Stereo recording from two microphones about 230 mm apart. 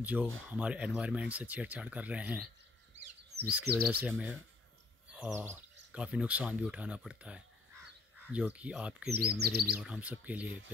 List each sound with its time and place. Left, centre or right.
0.0 s speech: centre
3.7 s speech: centre
9.4 s speech: right
9.8 s speech: centre